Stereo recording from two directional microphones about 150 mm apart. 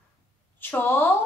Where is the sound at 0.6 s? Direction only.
15° left (ahead or behind).